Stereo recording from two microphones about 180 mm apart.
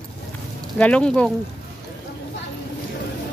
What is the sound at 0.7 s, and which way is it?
Speech, 5° left (ahead or behind).